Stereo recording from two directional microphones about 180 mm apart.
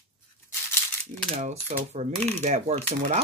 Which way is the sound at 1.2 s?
40° right (ahead or behind).